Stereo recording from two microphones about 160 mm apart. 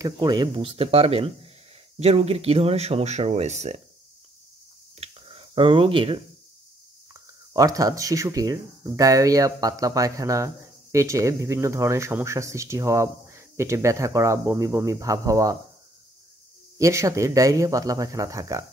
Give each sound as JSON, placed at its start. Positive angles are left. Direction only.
{"t": 0.0, "sound": "speech", "side_deg": -25}
{"t": 5.0, "sound": "a sound", "side_deg": -35}
{"t": 7.2, "sound": "speech", "side_deg": -20}
{"t": 16.7, "sound": "speech", "side_deg": -20}